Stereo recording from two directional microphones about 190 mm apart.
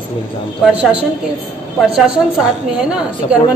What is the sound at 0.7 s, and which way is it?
A woman's voice, 5° right (ahead or behind).